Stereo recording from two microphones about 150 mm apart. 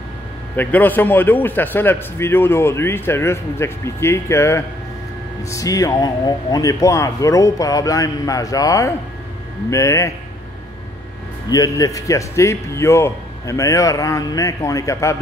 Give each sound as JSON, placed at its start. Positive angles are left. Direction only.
{"t": 0.6, "sound": "a man's voice", "side_deg": 10}
{"t": 11.4, "sound": "speech", "side_deg": 25}